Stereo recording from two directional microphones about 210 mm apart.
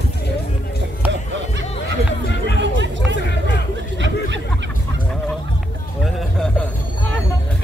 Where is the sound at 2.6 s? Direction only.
60° right (ahead or behind).